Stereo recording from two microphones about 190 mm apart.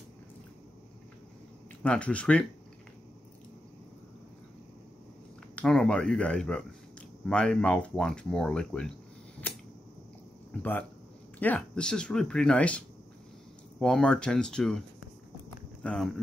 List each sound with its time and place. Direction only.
1.8 s speech: 5° left (ahead or behind)
5.6 s speech: 5° left (ahead or behind)
10.5 s speech: 5° left (ahead or behind)
15.8 s speech: 5° left (ahead or behind)